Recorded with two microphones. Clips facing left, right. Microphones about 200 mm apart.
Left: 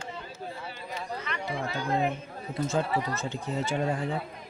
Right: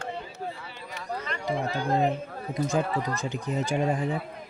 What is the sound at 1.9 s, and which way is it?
Speech, 35° right (ahead or behind).